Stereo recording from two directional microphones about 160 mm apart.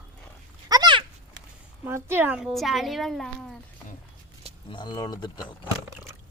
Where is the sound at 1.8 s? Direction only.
15° right (ahead or behind).